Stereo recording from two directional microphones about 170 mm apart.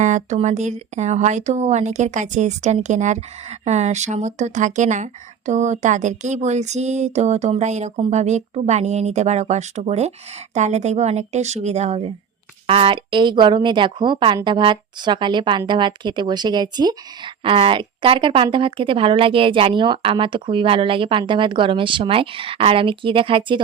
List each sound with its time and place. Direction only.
0.0 s speech: 45° right (ahead or behind)